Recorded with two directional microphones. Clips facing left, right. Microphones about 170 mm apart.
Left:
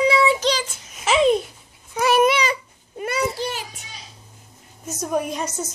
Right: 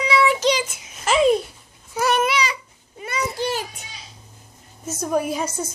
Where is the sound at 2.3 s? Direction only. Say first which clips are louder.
Left 3 dB; 50° left (ahead or behind).